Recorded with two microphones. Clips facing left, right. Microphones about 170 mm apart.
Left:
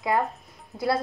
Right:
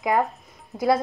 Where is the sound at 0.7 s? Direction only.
20° right (ahead or behind).